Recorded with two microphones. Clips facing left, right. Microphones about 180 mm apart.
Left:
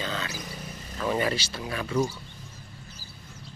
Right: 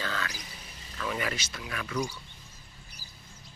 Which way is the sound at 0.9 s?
35° left (ahead or behind).